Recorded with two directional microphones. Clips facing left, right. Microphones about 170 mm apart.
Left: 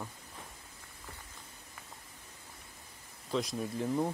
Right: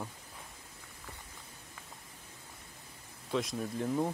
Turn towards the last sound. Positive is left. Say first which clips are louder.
# even
turn(degrees=0)  # may be behind; listen again after turning